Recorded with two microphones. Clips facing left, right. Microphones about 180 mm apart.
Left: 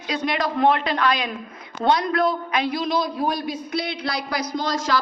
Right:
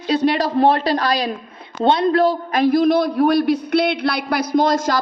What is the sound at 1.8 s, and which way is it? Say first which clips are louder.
Speech: right 5 dB; 25° right (ahead or behind).